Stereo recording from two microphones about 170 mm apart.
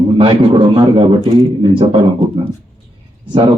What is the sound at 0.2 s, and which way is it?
Speech, 30° right (ahead or behind).